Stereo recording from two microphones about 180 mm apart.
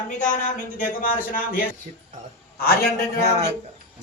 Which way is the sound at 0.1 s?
45° left (ahead or behind).